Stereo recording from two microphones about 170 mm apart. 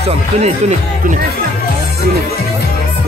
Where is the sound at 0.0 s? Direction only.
40° right (ahead or behind).